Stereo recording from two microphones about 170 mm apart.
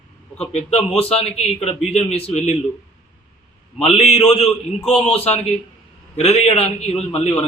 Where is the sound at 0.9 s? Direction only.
35° left (ahead or behind).